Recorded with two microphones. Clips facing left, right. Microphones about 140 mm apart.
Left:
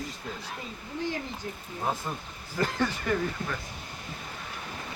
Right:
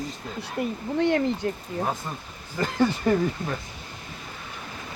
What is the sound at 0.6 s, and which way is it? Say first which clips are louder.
Speech: right 12 dB; 70° right (ahead or behind).